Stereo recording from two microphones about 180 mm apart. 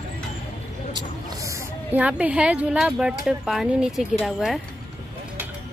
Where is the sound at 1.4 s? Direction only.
10° right (ahead or behind).